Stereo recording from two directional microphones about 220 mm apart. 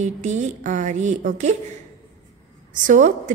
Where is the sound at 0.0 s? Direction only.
35° right (ahead or behind).